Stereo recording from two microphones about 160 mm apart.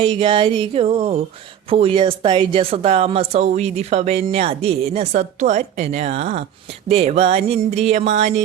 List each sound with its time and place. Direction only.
0.0 s speech: 30° right (ahead or behind); by 8.3 s 50° right (ahead or behind)